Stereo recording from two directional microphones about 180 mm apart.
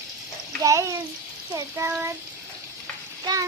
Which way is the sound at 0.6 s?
15° right (ahead or behind).